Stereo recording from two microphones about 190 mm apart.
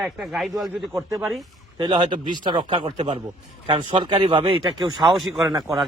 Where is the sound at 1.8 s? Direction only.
25° right (ahead or behind).